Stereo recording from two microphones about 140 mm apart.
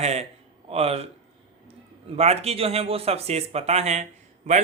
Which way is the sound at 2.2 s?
45° right (ahead or behind).